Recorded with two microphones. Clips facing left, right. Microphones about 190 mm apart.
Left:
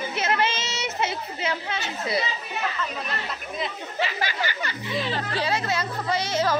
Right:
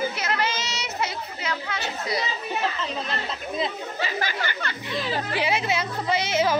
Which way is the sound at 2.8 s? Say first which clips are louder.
Right 1 dB; 25° right (ahead or behind).